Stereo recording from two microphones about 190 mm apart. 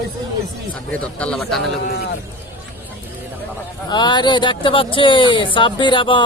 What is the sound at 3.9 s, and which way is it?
Speech, 25° left (ahead or behind).